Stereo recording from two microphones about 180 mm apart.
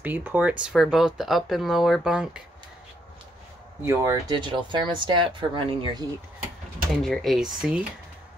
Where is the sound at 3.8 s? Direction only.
15° right (ahead or behind).